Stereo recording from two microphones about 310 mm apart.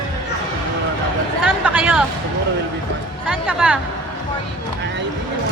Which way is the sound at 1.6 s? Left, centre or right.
Centre.